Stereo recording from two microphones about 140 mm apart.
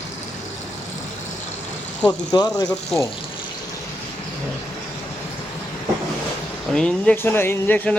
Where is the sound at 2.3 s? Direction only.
30° left (ahead or behind).